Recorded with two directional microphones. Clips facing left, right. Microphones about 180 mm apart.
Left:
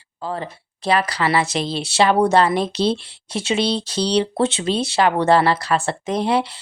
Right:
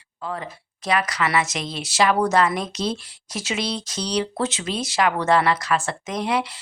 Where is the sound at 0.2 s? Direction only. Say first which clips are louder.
Left 4 dB; 30° left (ahead or behind).